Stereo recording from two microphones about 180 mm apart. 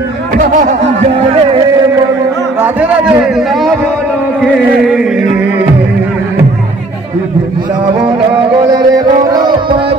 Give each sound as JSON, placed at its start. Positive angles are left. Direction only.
{"t": 0.4, "sound": "a sound", "side_deg": -45}
{"t": 3.3, "sound": "speech", "side_deg": 0}
{"t": 8.6, "sound": "music", "side_deg": -20}